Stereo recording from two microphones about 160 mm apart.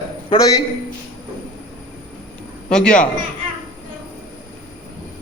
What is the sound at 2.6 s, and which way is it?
Speech, 5° left (ahead or behind).